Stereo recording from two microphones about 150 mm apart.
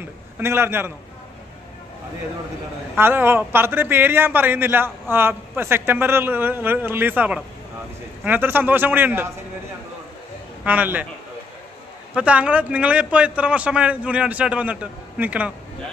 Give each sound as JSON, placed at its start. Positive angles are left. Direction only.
{"t": 0.4, "sound": "a man's voice", "side_deg": -15}
{"t": 3.0, "sound": "a man's voice", "side_deg": -15}
{"t": 10.6, "sound": "a man's voice", "side_deg": -10}
{"t": 12.1, "sound": "a man's voice", "side_deg": -10}